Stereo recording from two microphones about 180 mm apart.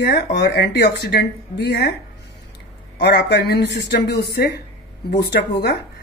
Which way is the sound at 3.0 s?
65° left (ahead or behind).